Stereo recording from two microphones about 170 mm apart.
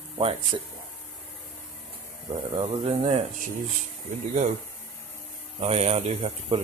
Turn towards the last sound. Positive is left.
turn(degrees=-35)  # may be behind; listen again after turning